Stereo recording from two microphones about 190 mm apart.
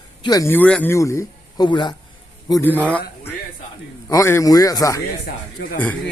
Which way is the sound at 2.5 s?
10° left (ahead or behind).